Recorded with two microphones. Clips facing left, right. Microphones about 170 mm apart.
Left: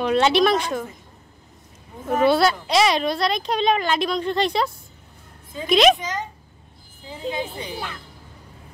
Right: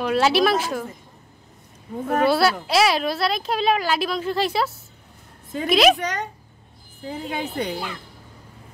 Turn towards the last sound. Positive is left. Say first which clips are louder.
# right 3 dB
turn(degrees=-65)  # may be behind; listen again after turning